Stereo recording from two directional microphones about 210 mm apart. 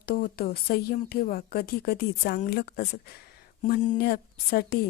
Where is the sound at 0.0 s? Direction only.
45° left (ahead or behind).